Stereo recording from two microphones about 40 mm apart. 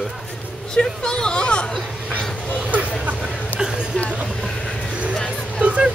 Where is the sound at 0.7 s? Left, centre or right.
Left.